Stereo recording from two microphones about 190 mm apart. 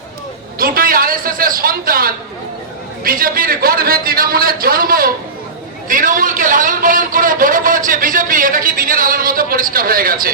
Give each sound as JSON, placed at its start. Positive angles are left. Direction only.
{"t": 0.6, "sound": "a man's voice", "side_deg": -50}